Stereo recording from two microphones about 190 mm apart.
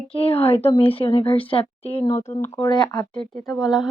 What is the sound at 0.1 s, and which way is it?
Speech, 30° left (ahead or behind).